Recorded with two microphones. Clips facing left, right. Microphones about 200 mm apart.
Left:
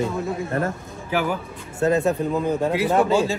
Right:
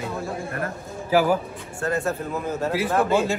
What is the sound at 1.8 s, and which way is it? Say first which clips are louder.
Speech: left 6 dB; 20° left (ahead or behind).